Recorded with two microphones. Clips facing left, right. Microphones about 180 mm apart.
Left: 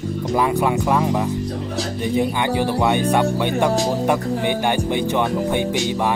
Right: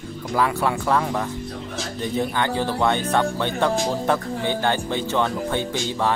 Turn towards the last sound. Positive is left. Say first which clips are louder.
# left 4 dB
turn(degrees=15)  # may be behind; listen again after turning